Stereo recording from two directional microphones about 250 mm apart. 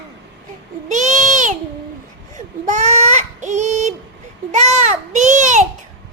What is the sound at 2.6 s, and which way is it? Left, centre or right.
Child singing, right.